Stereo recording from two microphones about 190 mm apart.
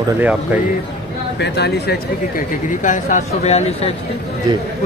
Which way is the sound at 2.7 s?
40° left (ahead or behind).